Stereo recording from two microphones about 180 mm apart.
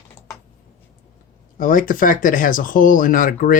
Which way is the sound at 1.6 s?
50° left (ahead or behind).